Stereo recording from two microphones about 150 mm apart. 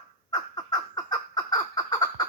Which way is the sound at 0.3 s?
25° left (ahead or behind).